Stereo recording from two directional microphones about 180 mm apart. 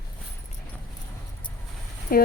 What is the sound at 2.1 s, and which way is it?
Speech, 50° left (ahead or behind).